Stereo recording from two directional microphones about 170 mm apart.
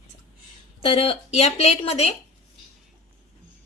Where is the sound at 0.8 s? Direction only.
35° left (ahead or behind).